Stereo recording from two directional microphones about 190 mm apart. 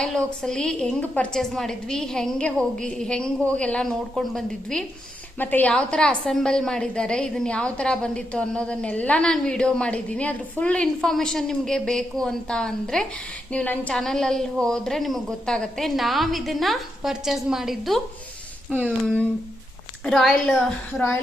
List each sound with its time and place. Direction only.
0.0 s a woman's voice: 5° left (ahead or behind)